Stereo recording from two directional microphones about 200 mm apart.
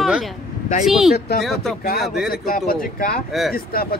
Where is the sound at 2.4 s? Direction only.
45° left (ahead or behind).